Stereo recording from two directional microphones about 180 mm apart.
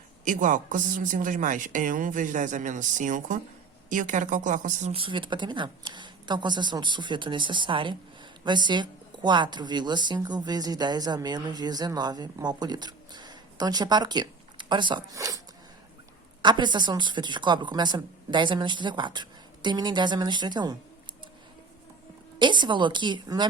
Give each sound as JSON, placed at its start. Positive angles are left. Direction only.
{"t": 0.3, "sound": "speech", "side_deg": -45}
{"t": 16.4, "sound": "speech", "side_deg": -25}
{"t": 22.4, "sound": "speech", "side_deg": -25}